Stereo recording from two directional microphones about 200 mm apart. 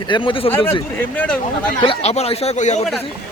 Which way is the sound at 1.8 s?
30° left (ahead or behind).